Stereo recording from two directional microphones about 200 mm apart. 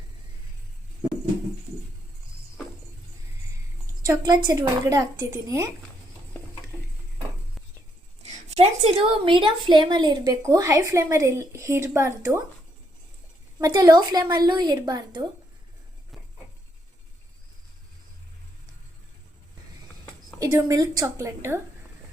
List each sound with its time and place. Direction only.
4.0 s a woman's voice: 20° right (ahead or behind)
8.2 s a woman's voice: 35° right (ahead or behind); by 12.4 s 15° right (ahead or behind)
13.6 s a woman's voice: 20° right (ahead or behind)
20.4 s a woman's voice: 15° right (ahead or behind)